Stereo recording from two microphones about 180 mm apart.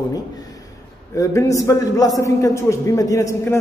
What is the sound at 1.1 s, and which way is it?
A man's voice, 15° left (ahead or behind).